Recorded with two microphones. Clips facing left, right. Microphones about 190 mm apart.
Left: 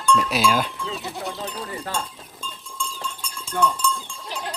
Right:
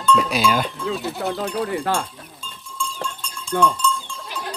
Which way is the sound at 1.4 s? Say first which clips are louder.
Right 8 dB; 70° right (ahead or behind).